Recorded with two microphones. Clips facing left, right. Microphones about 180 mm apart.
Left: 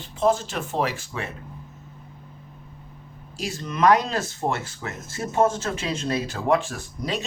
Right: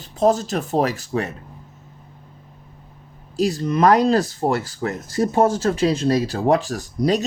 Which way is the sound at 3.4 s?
40° right (ahead or behind).